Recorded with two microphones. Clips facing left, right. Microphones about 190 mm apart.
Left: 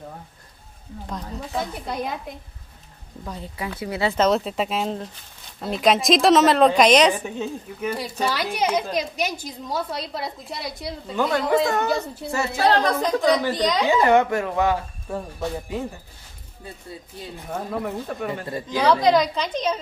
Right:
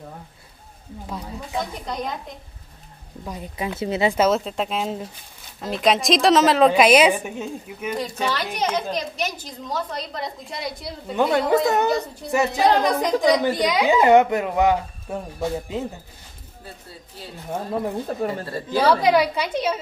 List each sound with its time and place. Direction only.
1.0 s a woman's voice: 10° right (ahead or behind)
1.6 s a woman's voice: 5° left (ahead or behind)
3.3 s speech: 15° right (ahead or behind)
4.3 s a woman's voice: centre (ahead or behind)
8.0 s a woman's voice: 10° left (ahead or behind)
11.1 s a woman's voice: 25° right (ahead or behind)
17.8 s speech: 30° right (ahead or behind)
18.7 s a woman's voice: 10° right (ahead or behind)